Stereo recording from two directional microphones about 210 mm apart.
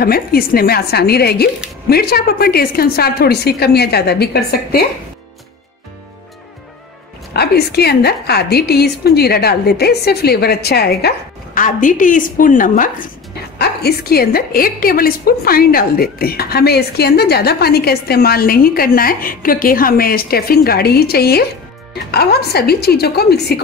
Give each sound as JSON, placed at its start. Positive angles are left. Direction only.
{"t": 0.0, "sound": "a woman's voice", "side_deg": 45}
{"t": 7.3, "sound": "a woman's voice", "side_deg": 50}
{"t": 13.6, "sound": "a woman's voice", "side_deg": 50}